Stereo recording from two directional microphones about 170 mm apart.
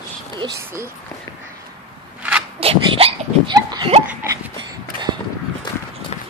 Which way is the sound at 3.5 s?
25° right (ahead or behind).